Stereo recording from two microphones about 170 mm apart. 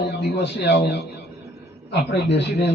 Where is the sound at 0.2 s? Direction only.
80° left.